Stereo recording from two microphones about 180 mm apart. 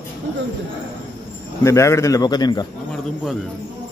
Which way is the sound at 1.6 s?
15° left (ahead or behind).